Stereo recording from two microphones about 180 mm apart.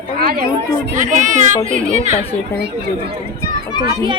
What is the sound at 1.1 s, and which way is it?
Speech, 45° right (ahead or behind).